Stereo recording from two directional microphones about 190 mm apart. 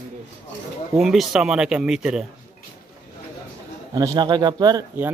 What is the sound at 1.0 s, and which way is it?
Speech, centre (ahead or behind).